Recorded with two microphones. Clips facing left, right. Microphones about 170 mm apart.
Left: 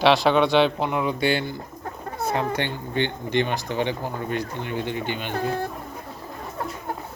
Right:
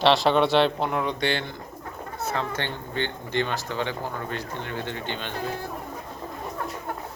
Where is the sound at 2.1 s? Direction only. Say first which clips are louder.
Left 4 dB; 10° left (ahead or behind).